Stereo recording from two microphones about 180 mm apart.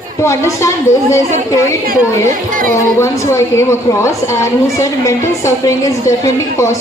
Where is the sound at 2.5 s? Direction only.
50° right (ahead or behind).